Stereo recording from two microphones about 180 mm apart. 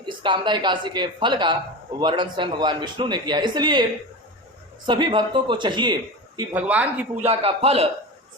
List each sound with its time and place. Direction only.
0.0 s speech: 25° right (ahead or behind)
4.9 s speech: 25° right (ahead or behind)
6.5 s a man's voice: 10° right (ahead or behind)
7.3 s a man's voice: 35° right (ahead or behind)